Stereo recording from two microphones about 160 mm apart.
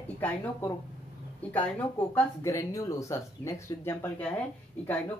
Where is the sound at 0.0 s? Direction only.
15° left (ahead or behind).